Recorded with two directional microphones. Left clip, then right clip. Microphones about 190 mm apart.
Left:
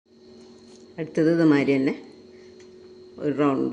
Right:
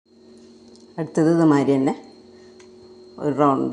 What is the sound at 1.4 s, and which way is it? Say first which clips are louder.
Speech: right 2 dB; 5° right (ahead or behind).